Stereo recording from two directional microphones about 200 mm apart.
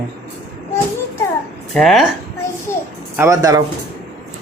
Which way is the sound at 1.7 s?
Centre (ahead or behind).